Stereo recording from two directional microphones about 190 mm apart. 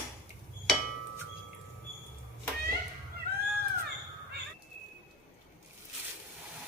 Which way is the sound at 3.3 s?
55° right (ahead or behind).